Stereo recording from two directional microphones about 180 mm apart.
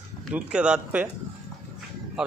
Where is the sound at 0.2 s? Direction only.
5° right (ahead or behind).